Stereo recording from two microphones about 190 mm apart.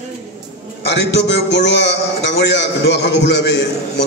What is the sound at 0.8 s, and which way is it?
A man's voice, 65° left (ahead or behind).